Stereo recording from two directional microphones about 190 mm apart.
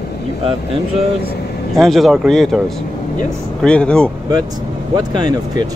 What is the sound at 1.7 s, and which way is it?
Speech, centre (ahead or behind).